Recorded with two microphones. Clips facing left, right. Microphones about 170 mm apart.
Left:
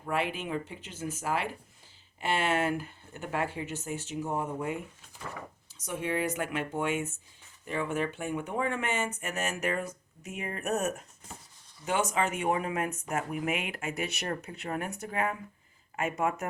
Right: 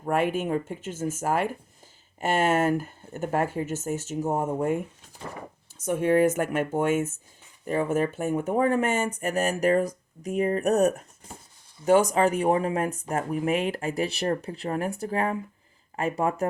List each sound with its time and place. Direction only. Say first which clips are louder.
0.0 s speech: right 7 dB; 45° right (ahead or behind)